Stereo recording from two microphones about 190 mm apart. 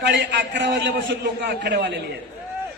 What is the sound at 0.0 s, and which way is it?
A man's voice, 65° right (ahead or behind).